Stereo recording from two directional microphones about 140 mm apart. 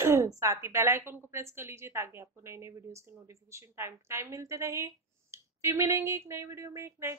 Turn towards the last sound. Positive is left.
turn(degrees=-20)  # may be behind; listen again after turning